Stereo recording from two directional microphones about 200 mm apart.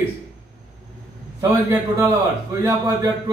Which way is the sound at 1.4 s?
15° right (ahead or behind).